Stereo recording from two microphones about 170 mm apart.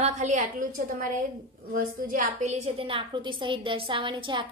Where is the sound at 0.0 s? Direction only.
45° right (ahead or behind).